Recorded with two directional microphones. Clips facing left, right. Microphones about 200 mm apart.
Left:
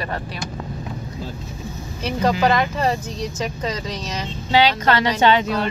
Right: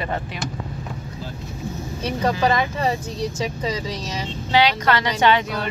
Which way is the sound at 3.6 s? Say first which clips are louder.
Even; 10° right (ahead or behind).